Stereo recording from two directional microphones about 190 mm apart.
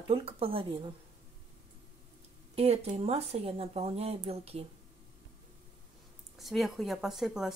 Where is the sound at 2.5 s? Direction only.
30° right (ahead or behind).